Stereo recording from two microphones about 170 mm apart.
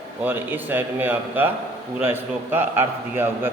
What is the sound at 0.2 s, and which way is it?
A man's voice, 10° right (ahead or behind).